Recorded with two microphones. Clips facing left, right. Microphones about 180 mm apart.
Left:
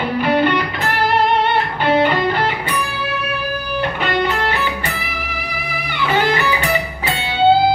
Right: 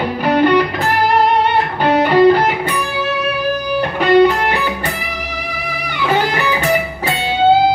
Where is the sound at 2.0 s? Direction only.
40° right (ahead or behind).